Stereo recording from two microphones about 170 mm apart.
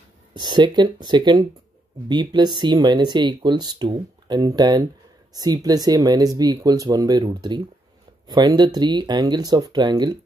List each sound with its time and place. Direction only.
0.3 s speech: 25° right (ahead or behind)